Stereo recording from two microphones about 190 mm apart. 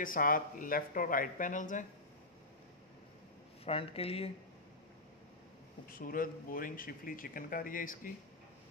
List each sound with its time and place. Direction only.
0.0 s speech: 45° left (ahead or behind)
3.6 s speech: 30° left (ahead or behind)
5.9 s speech: 50° left (ahead or behind)